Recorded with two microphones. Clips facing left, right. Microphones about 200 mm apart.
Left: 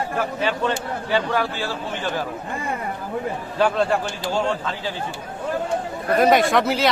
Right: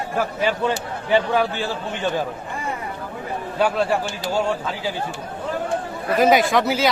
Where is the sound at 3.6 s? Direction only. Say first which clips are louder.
Left 1 dB; 5° right (ahead or behind).